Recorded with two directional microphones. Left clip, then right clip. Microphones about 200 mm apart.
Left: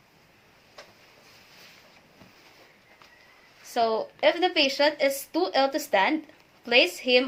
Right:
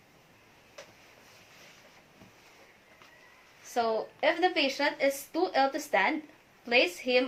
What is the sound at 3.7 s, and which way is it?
A woman's voice, 35° left (ahead or behind).